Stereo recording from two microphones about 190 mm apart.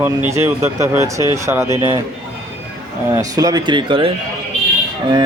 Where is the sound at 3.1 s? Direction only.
20° right (ahead or behind).